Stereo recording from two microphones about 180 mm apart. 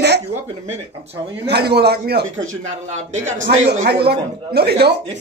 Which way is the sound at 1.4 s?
65° right (ahead or behind).